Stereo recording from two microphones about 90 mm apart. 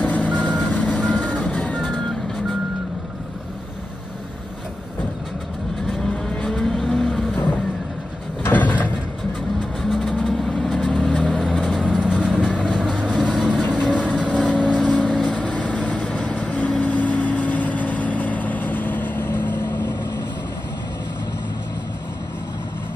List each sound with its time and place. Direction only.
0.0 s reversing beeps: 15° left (ahead or behind)
1.8 s vehicle: 5° left (ahead or behind)
5.9 s vehicle: 5° left (ahead or behind)
8.5 s sliding door: 20° left (ahead or behind)
9.8 s vehicle: centre (ahead or behind)
11.9 s vehicle: 10° right (ahead or behind)
13.5 s vehicle: 15° left (ahead or behind)